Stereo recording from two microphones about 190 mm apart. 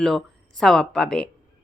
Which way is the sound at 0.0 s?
Centre (ahead or behind).